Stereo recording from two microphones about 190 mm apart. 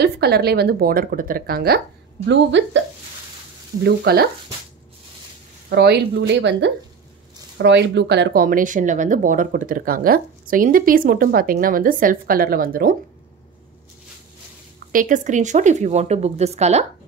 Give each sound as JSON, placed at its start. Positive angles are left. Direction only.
{"t": 0.0, "sound": "speech", "side_deg": -55}
{"t": 2.2, "sound": "a woman's voice", "side_deg": -70}
{"t": 3.8, "sound": "speech", "side_deg": -55}
{"t": 5.7, "sound": "speech", "side_deg": -60}
{"t": 14.9, "sound": "a woman's voice", "side_deg": -45}